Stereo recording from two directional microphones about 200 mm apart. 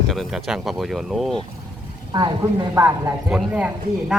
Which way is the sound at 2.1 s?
20° right (ahead or behind).